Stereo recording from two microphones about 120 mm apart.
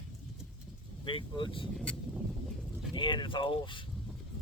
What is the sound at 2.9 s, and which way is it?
Speech, 40° left (ahead or behind).